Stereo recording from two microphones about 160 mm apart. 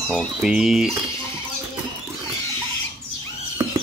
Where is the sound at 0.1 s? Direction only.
Centre (ahead or behind).